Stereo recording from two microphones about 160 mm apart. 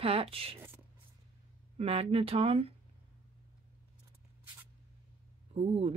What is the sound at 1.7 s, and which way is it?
Speech, 40° right (ahead or behind).